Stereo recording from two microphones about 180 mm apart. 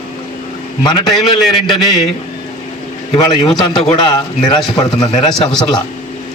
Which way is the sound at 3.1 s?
25° left (ahead or behind).